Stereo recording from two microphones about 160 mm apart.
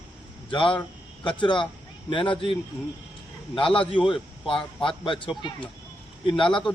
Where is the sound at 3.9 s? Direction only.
30° left (ahead or behind).